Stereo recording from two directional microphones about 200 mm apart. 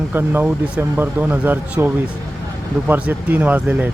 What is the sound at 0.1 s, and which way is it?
Speech, 10° right (ahead or behind).